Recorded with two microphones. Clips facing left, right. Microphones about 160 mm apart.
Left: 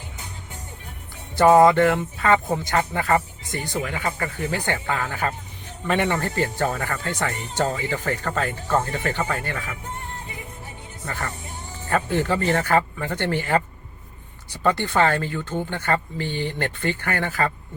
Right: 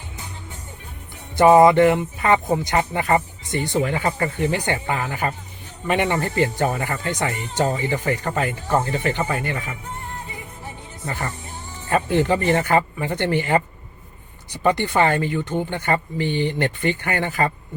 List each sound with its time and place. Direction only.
1.4 s speech: 20° right (ahead or behind)
11.9 s speech: 15° right (ahead or behind)